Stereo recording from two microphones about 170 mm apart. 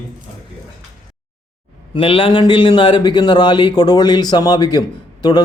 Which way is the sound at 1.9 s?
35° left (ahead or behind).